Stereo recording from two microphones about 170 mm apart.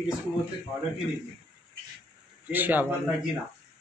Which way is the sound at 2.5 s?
10° right (ahead or behind).